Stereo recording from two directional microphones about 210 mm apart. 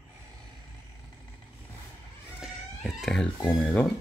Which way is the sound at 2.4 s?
Centre (ahead or behind).